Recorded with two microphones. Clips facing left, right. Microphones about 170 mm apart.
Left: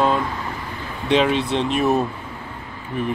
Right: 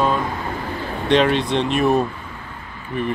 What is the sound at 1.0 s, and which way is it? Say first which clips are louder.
Speech: right 1 dB; 5° left (ahead or behind).